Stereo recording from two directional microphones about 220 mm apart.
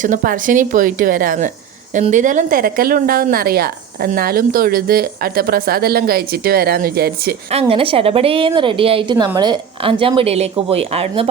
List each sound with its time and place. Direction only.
0.0 s a woman's voice: 35° right (ahead or behind)
7.5 s a woman's voice: 25° right (ahead or behind)